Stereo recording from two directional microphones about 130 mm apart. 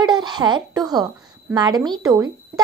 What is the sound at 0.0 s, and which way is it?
A woman's voice, 35° right (ahead or behind).